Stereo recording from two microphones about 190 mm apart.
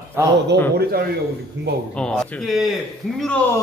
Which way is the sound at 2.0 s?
Centre (ahead or behind).